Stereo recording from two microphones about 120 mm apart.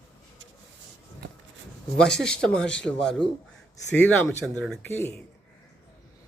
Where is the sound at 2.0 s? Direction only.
5° left (ahead or behind).